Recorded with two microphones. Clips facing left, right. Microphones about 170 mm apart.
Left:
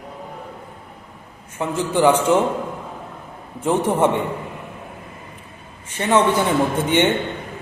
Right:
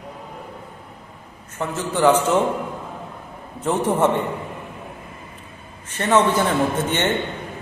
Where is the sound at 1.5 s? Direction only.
10° left (ahead or behind).